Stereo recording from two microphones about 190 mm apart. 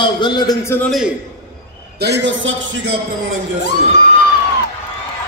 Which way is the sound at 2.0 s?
65° right (ahead or behind).